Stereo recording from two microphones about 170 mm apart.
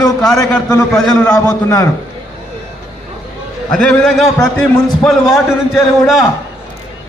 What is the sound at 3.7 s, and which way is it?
A man's voice, 5° left (ahead or behind).